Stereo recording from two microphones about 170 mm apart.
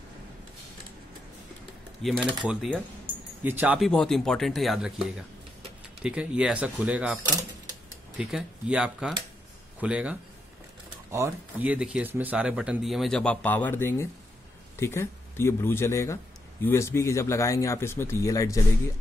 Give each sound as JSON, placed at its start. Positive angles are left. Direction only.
{"t": 2.0, "sound": "speech", "side_deg": -5}
{"t": 8.2, "sound": "speech", "side_deg": -5}